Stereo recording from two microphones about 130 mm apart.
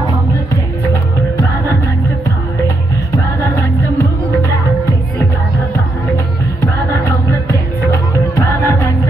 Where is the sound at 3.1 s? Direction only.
25° left (ahead or behind).